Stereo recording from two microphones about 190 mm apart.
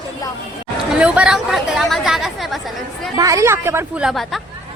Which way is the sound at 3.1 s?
15° right (ahead or behind).